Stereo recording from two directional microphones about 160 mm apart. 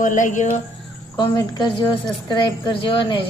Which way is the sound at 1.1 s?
25° left (ahead or behind).